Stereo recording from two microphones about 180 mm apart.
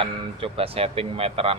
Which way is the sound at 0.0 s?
30° right (ahead or behind).